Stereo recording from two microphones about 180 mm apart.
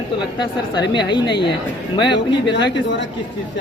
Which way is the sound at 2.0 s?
80° left.